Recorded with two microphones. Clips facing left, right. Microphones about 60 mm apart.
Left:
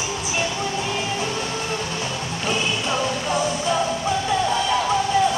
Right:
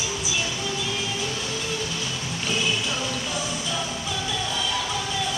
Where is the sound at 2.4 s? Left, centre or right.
Left.